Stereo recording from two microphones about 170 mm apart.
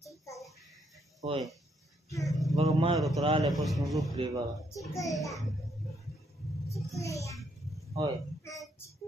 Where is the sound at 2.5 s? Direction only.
20° right (ahead or behind).